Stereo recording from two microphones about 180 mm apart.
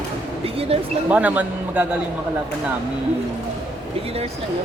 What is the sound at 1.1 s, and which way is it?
Speech, 10° right (ahead or behind).